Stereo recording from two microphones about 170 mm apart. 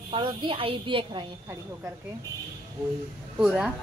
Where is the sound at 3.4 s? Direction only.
5° right (ahead or behind).